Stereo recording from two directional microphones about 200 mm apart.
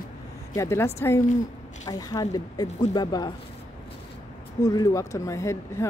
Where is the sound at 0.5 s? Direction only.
15° left (ahead or behind).